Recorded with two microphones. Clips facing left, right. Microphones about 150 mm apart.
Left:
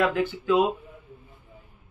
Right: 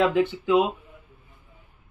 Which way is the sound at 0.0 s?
15° right (ahead or behind).